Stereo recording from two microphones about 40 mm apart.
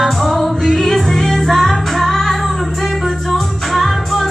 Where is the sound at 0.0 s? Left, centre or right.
Centre.